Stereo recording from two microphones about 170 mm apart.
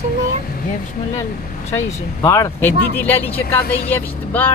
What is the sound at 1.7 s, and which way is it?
Speech, 15° left (ahead or behind).